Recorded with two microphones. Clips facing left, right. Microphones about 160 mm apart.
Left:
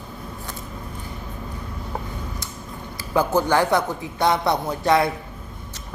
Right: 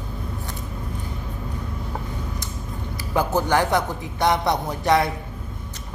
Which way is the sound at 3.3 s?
15° right (ahead or behind).